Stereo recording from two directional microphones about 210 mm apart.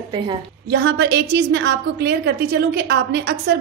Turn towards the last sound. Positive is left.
turn(degrees=-55)  # may be behind; listen again after turning